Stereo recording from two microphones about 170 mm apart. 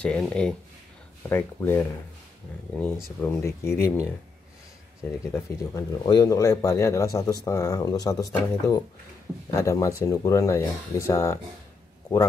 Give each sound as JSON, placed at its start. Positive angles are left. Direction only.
{"t": 0.0, "sound": "speech", "side_deg": 5}
{"t": 5.3, "sound": "speech", "side_deg": 20}